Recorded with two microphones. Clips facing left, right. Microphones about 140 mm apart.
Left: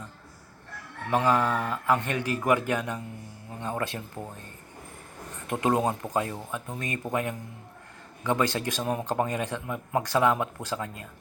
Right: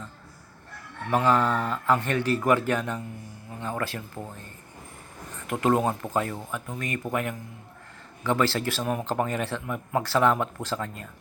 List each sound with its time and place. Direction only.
1.1 s speech: 15° left (ahead or behind)
5.5 s speech: 20° left (ahead or behind)